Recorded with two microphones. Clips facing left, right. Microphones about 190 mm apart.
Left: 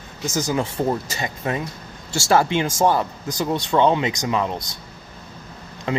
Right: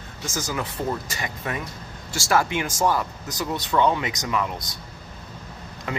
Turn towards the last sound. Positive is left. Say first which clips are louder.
# left 6 dB
turn(degrees=25)  # may be behind; listen again after turning